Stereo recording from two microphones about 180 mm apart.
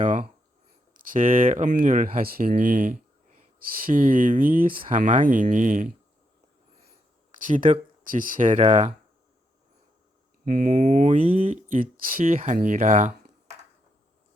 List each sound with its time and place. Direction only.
0.9 s speech: 50° right (ahead or behind)
4.7 s speech: 30° right (ahead or behind); by 5.9 s 45° right (ahead or behind)
7.3 s speech: 45° right (ahead or behind)
10.4 s speech: 50° right (ahead or behind)